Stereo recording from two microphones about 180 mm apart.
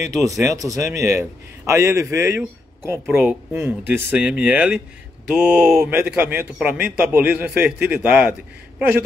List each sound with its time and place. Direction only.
0.0 s a man's voice: 20° right (ahead or behind)